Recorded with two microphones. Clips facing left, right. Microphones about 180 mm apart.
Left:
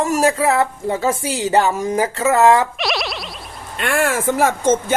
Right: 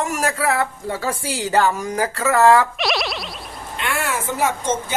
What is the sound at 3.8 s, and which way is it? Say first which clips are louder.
Speech: left 6 dB; 50° left (ahead or behind).